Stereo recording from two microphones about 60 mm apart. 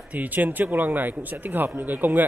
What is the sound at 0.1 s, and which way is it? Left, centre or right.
Speech, right.